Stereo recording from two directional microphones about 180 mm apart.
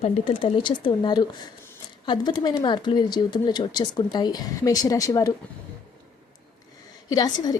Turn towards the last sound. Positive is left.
turn(degrees=20)  # may be behind; listen again after turning